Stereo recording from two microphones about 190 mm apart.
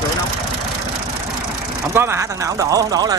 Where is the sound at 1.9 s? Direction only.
15° right (ahead or behind).